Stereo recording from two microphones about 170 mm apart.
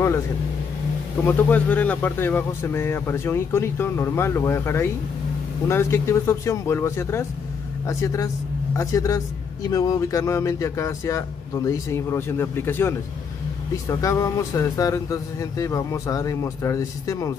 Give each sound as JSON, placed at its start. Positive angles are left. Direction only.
{"t": 1.2, "sound": "a man's voice", "side_deg": 10}